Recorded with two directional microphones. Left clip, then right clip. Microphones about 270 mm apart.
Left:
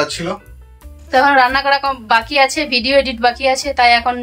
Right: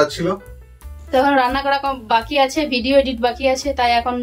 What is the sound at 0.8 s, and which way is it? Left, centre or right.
A woman's voice, centre.